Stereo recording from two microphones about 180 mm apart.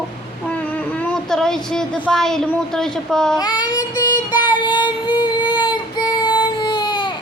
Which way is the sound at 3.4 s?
20° left (ahead or behind).